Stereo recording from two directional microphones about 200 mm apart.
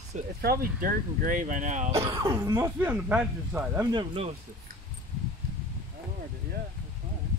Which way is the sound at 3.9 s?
30° right (ahead or behind).